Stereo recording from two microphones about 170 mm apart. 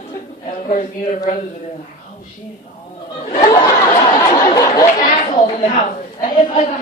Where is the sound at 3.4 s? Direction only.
25° left (ahead or behind).